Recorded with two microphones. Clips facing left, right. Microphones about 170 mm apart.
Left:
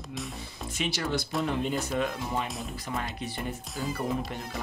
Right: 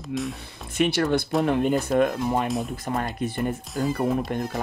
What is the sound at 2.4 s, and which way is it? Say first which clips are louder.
Speech: right 10 dB; centre (ahead or behind).